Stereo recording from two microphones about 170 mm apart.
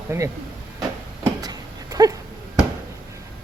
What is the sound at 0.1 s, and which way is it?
Speech, 15° right (ahead or behind).